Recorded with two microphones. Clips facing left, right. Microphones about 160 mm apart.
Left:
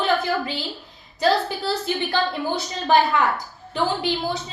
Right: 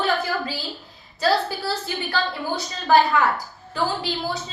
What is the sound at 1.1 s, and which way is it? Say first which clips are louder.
A woman's voice: left 1 dB; 20° left (ahead or behind).